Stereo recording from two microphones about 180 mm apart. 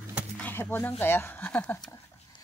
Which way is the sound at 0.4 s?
10° left (ahead or behind).